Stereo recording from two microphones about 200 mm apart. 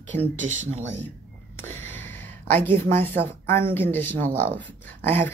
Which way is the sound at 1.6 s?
10° left (ahead or behind).